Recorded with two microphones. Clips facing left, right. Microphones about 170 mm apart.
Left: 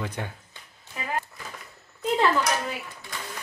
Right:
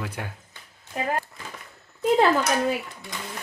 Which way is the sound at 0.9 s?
50° right (ahead or behind).